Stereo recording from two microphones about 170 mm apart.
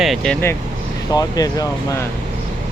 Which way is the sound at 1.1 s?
20° left (ahead or behind).